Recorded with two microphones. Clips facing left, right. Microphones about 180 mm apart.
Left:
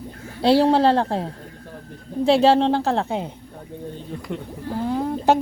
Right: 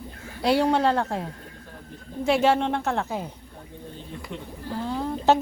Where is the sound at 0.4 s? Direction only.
30° left (ahead or behind).